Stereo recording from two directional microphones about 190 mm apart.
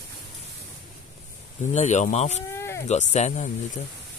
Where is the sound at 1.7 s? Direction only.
35° left (ahead or behind).